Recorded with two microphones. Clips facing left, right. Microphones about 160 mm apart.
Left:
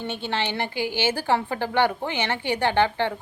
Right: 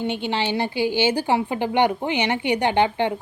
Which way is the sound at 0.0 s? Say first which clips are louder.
Right 4 dB; 15° right (ahead or behind).